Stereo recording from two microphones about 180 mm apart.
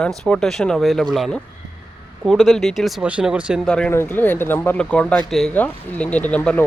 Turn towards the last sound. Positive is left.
turn(degrees=10)  # may be behind; listen again after turning